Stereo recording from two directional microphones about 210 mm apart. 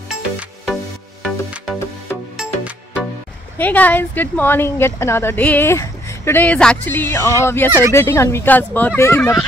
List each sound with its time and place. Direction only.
0.1 s music: centre (ahead or behind)
3.5 s speech: 10° left (ahead or behind)